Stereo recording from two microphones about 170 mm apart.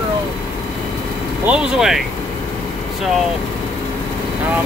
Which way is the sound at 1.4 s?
5° right (ahead or behind).